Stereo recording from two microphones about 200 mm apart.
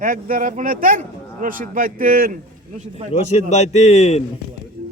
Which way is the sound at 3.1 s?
30° left (ahead or behind).